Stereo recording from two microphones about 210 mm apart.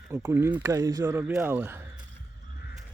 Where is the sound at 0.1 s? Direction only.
10° right (ahead or behind).